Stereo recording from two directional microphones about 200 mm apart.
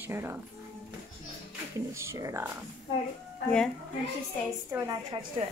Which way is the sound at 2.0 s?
15° right (ahead or behind).